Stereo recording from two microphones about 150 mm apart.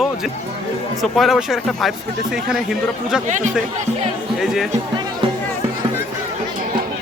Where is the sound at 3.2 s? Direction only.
55° right (ahead or behind).